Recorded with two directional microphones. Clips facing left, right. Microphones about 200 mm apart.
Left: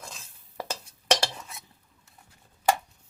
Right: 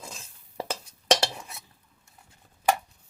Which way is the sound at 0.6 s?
25° right (ahead or behind).